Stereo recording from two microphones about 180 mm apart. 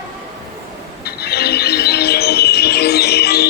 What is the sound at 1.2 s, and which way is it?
Music, 60° left (ahead or behind).